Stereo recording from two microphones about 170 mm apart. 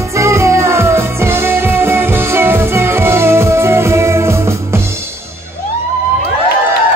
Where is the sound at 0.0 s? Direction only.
15° right (ahead or behind).